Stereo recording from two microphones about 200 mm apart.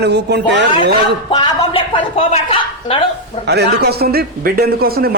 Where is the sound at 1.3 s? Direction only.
25° left (ahead or behind).